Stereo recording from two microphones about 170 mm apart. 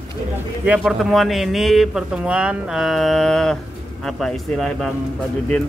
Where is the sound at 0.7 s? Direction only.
Centre (ahead or behind).